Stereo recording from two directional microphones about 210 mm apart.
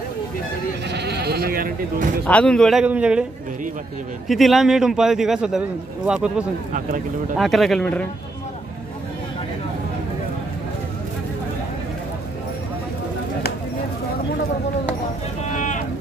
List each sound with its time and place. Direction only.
0.8 s speech: 50° right (ahead or behind)
2.2 s a man's voice: 5° left (ahead or behind)
4.3 s a man's voice: centre (ahead or behind)
15.5 s vehicle: 35° left (ahead or behind)